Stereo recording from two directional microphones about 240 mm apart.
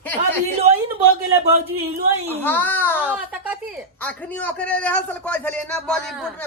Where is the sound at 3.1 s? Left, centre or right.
Centre.